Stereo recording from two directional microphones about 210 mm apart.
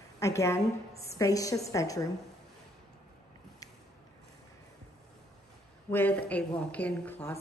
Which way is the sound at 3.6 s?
15° left (ahead or behind).